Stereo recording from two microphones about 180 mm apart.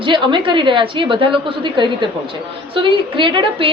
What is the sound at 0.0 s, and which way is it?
A woman's voice, 25° right (ahead or behind).